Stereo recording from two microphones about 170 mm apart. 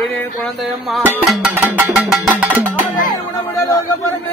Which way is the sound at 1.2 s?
10° right (ahead or behind).